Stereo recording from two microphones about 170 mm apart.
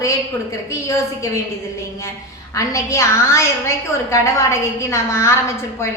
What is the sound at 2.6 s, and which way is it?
A woman's voice, 15° left (ahead or behind).